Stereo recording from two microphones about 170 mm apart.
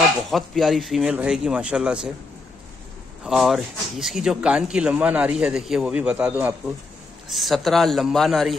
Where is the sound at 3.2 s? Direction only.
5° right (ahead or behind).